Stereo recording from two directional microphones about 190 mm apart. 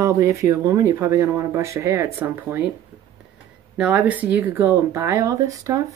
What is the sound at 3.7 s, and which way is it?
Speech, 5° right (ahead or behind).